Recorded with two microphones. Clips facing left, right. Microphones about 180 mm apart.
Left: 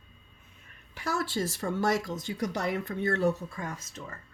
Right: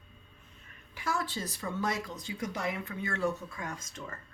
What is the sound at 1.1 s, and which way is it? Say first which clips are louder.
Speech: left 6 dB; 85° left.